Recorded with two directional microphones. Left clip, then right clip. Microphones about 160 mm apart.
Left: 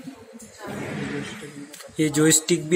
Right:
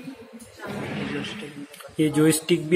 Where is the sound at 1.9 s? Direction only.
Centre (ahead or behind).